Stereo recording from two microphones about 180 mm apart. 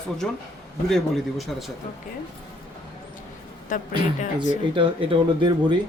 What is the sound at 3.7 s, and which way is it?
Speech, 45° left (ahead or behind).